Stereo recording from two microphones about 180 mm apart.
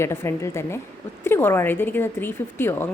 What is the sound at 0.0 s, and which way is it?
A woman's voice, 15° left (ahead or behind).